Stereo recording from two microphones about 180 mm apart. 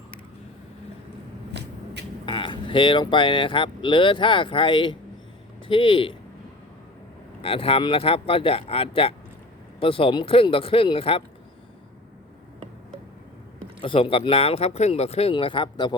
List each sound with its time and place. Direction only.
1.5 s vehicle: 70° right (ahead or behind)
2.2 s speech: 25° left (ahead or behind)
7.4 s speech: 30° left (ahead or behind)
13.8 s speech: 30° left (ahead or behind)